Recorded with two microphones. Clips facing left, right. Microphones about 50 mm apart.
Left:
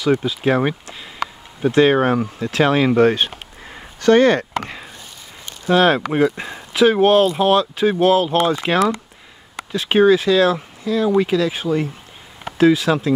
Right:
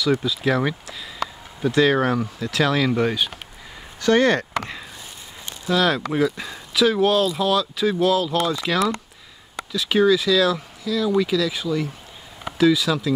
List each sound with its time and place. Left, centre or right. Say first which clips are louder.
0.0 s speech: left 3 dB; left
3.7 s a sound: left 5 dB; left
5.7 s speech: left 5 dB; left